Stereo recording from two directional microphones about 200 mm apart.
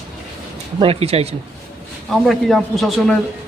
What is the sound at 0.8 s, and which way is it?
Speech, 30° right (ahead or behind).